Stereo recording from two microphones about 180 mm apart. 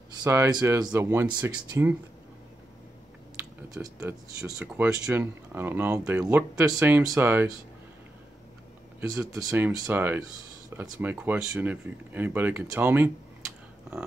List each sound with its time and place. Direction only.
0.2 s speech: 15° right (ahead or behind)
3.8 s speech: 20° right (ahead or behind)
4.6 s speech: 5° right (ahead or behind)
9.4 s speech: 15° right (ahead or behind)